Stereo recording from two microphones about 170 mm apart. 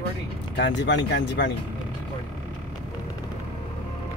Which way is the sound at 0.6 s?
90° left.